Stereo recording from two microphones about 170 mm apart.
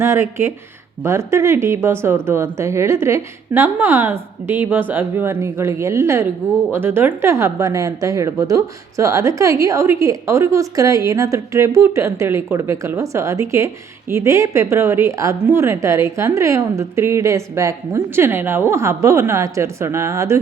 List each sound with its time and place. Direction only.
0.0 s speech: 15° right (ahead or behind)